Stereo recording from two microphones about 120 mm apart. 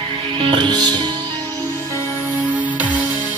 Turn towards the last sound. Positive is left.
turn(degrees=-15)  # may be behind; listen again after turning